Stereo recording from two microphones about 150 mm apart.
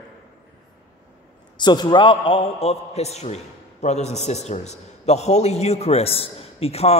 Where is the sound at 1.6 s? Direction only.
30° left (ahead or behind).